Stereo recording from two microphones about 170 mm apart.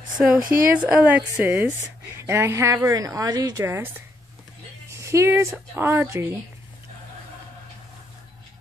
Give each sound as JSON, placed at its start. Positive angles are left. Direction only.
{"t": 0.4, "sound": "a woman's voice", "side_deg": -55}
{"t": 0.7, "sound": "speech", "side_deg": -5}
{"t": 4.9, "sound": "speech", "side_deg": -15}